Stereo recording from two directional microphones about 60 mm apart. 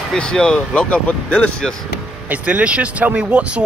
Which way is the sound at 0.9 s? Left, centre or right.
Left.